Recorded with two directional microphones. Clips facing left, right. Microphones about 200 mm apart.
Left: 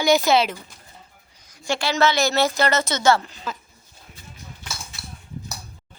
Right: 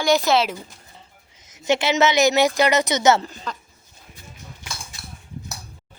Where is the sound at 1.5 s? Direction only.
20° right (ahead or behind).